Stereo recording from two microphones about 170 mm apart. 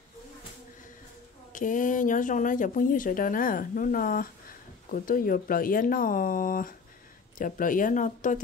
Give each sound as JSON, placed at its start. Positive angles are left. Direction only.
{"t": 1.5, "sound": "speech", "side_deg": 50}